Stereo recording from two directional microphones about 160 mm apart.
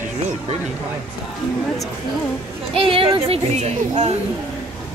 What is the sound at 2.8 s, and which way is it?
A child's voice, 35° right (ahead or behind).